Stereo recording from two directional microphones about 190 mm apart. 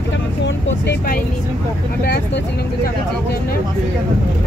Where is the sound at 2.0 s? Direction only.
55° left (ahead or behind).